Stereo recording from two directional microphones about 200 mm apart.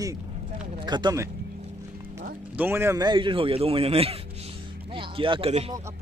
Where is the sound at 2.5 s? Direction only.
10° right (ahead or behind); by 5.7 s 30° right (ahead or behind).